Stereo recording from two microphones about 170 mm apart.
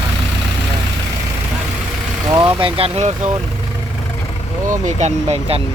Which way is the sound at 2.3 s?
30° right (ahead or behind).